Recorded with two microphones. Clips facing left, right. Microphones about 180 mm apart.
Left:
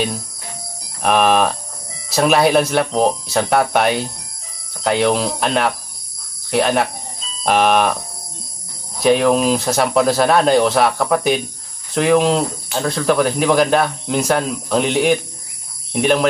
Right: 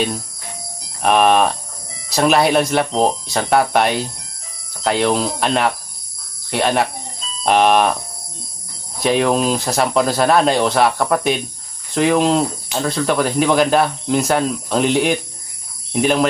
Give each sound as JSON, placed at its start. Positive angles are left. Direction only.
{"t": 1.0, "sound": "speech", "side_deg": 0}
{"t": 8.9, "sound": "speech", "side_deg": 0}